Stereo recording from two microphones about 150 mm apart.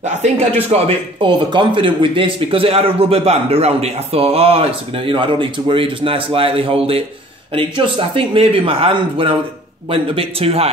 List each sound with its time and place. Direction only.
0.7 s speech: 40° right (ahead or behind)